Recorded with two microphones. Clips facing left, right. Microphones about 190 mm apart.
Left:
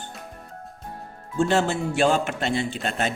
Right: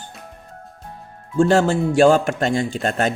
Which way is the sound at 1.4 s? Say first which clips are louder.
Right 6 dB; 40° right (ahead or behind).